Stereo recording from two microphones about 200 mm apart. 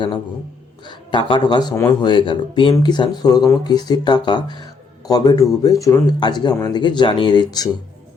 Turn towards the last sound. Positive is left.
turn(degrees=20)  # may be behind; listen again after turning